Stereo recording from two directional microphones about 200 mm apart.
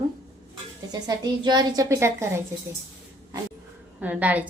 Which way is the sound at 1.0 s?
20° right (ahead or behind).